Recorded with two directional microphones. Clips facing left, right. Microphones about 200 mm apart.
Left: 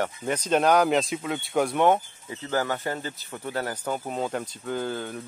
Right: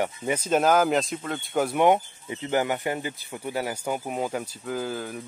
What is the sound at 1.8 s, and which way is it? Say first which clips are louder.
Speech: right 4 dB; 15° right (ahead or behind).